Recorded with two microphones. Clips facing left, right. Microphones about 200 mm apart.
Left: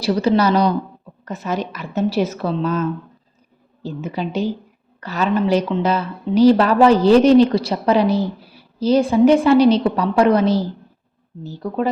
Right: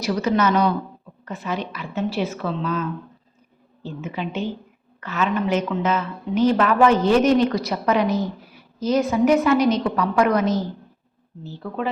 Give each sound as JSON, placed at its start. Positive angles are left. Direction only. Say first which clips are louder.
{"t": 0.0, "sound": "a woman's voice", "louder": "left 4 dB", "side_deg": 30}